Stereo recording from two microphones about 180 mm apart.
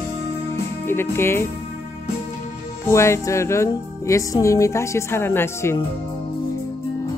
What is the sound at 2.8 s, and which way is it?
Music, 15° left (ahead or behind).